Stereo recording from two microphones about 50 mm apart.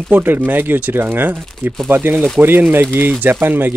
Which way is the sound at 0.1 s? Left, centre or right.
Right.